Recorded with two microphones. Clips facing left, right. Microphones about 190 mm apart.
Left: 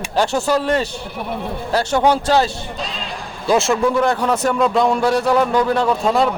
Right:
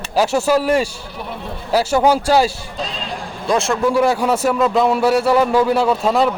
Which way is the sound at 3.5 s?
Centre (ahead or behind).